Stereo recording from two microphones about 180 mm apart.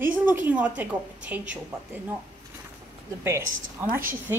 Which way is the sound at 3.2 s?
15° right (ahead or behind).